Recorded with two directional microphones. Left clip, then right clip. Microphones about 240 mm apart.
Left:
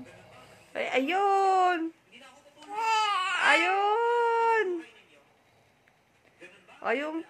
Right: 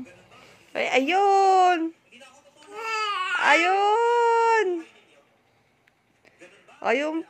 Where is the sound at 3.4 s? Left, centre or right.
Right.